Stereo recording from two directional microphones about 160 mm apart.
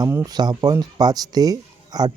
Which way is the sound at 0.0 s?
20° right (ahead or behind).